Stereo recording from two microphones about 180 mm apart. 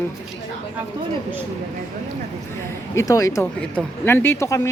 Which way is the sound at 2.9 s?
20° left (ahead or behind).